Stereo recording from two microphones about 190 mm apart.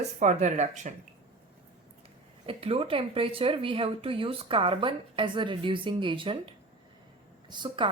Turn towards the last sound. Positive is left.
turn(degrees=-25)  # may be behind; listen again after turning